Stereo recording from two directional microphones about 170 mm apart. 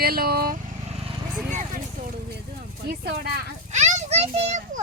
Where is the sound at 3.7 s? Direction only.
40° right (ahead or behind).